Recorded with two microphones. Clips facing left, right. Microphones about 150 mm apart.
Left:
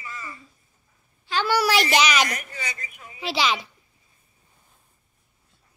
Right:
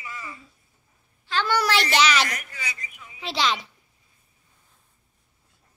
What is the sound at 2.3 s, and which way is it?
Speech, 30° left (ahead or behind).